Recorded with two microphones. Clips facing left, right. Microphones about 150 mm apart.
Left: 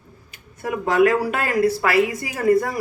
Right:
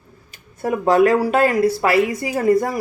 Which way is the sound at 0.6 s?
35° right (ahead or behind).